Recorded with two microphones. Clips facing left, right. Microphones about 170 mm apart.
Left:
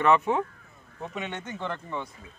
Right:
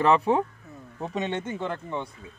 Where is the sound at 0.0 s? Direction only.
30° right (ahead or behind).